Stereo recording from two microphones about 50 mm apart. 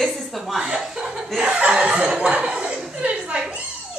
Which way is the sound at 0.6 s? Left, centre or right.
Centre.